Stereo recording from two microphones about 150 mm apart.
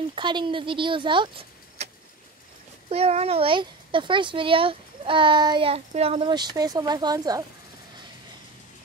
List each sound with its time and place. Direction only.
0.1 s a child's voice: 30° right (ahead or behind)
2.9 s a child's voice: 45° right (ahead or behind); by 7.4 s 25° right (ahead or behind)